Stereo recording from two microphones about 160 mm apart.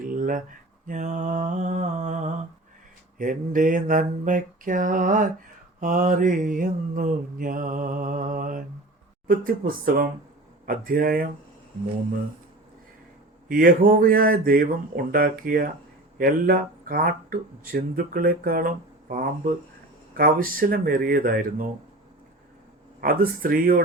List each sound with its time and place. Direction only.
0.0 s a sound: 60° right (ahead or behind)
0.9 s mantra: 50° right (ahead or behind)
3.2 s speech: 55° right (ahead or behind)
13.5 s speech: 65° right (ahead or behind)
23.0 s speech: 65° right (ahead or behind)